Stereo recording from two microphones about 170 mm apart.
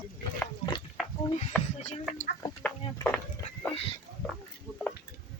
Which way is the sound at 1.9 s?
45° left (ahead or behind).